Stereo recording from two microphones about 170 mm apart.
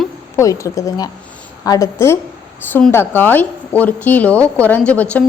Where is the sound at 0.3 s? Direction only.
20° left (ahead or behind).